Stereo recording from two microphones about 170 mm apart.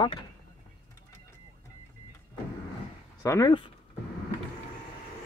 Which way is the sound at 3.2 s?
20° left (ahead or behind).